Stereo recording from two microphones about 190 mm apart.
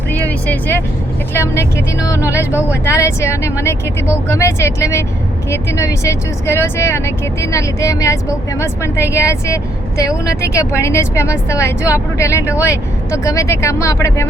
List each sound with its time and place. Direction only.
0.1 s vehicle: 10° left (ahead or behind)
1.3 s speech: 15° left (ahead or behind)